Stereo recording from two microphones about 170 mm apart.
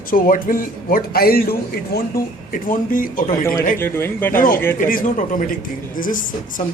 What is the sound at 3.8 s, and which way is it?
Speech, 15° left (ahead or behind).